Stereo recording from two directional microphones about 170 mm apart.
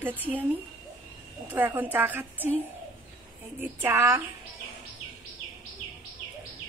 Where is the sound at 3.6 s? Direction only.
10° right (ahead or behind).